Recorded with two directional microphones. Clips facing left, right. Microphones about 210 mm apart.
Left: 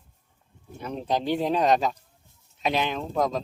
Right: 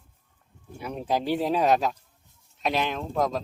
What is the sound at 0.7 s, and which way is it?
Speech, 10° right (ahead or behind).